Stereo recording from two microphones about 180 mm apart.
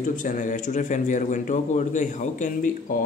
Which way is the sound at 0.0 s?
45° left (ahead or behind).